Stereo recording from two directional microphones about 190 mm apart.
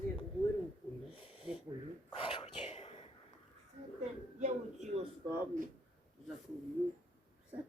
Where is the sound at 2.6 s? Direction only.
30° left (ahead or behind).